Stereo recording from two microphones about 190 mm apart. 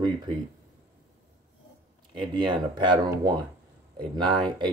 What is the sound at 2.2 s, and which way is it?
Speech, 25° right (ahead or behind).